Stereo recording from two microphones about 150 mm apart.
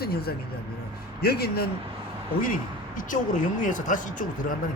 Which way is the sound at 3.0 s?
60° left (ahead or behind).